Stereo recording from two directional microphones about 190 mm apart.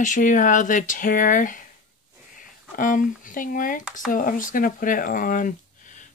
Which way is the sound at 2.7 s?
45° left (ahead or behind).